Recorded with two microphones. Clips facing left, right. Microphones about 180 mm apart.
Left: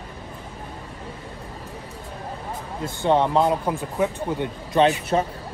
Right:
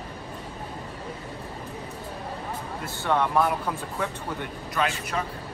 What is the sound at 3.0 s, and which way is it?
Speech, 20° left (ahead or behind).